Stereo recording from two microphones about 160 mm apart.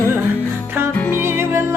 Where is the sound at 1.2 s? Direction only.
15° right (ahead or behind).